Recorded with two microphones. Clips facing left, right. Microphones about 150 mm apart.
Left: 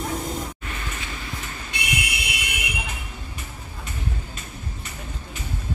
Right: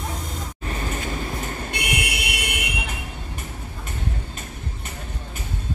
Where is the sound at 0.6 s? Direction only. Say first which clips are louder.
Right 5 dB; 35° right (ahead or behind); by 2.5 s 65° right (ahead or behind).